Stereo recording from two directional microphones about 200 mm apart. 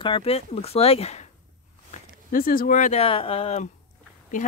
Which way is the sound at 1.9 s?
45° left (ahead or behind).